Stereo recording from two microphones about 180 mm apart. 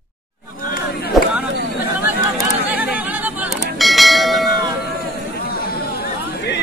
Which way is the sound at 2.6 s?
10° right (ahead or behind).